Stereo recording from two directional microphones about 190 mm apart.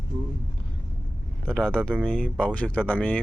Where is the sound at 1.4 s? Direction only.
5° left (ahead or behind).